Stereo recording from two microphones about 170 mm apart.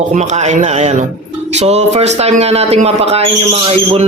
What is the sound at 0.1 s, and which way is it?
A man's voice, 45° right (ahead or behind).